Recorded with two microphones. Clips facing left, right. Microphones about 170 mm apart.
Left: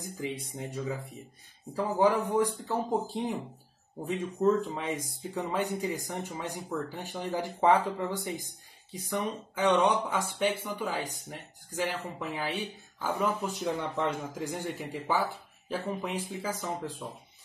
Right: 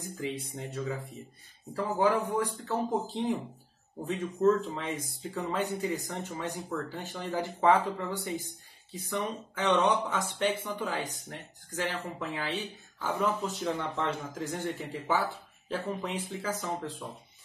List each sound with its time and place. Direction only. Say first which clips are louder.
0.0 s speech: even; 10° left (ahead or behind)